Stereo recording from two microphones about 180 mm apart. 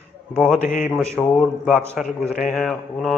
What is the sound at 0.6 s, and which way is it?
Speech, 45° left (ahead or behind).